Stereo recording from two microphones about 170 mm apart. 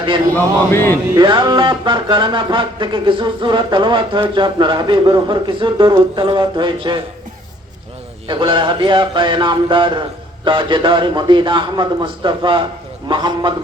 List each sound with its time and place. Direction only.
0.3 s speech: 10° left (ahead or behind)
1.1 s music: 25° right (ahead or behind)
8.3 s music: 30° right (ahead or behind)